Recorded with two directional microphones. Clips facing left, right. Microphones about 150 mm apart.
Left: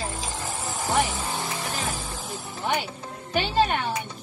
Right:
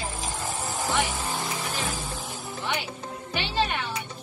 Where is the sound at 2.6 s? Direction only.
45° left (ahead or behind).